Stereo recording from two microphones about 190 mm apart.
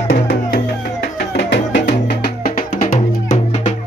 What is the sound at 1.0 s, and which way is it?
Music, 65° left (ahead or behind).